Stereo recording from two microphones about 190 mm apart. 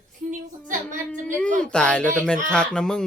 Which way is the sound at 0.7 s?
40° right (ahead or behind).